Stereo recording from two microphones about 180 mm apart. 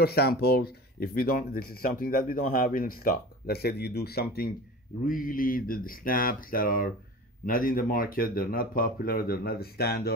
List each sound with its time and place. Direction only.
0.0 s speech: 60° left (ahead or behind)